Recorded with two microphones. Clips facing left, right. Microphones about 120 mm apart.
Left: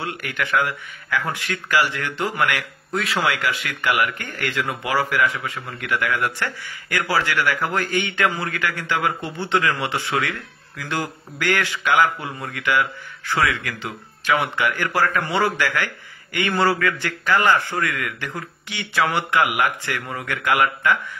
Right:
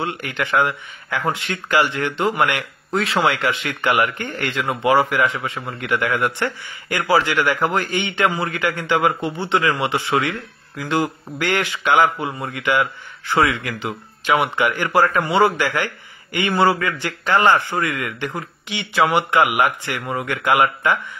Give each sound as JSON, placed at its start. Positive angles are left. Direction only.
{"t": 0.0, "sound": "a man's voice", "side_deg": -20}